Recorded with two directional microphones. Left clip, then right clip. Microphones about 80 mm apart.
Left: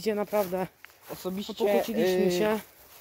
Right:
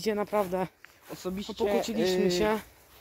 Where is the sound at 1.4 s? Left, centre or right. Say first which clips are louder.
Left 3 dB; left.